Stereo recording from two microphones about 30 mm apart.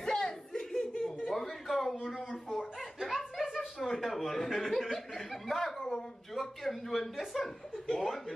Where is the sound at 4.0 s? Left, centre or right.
Centre.